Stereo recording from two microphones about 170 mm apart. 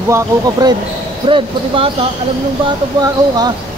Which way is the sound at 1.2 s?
30° right (ahead or behind).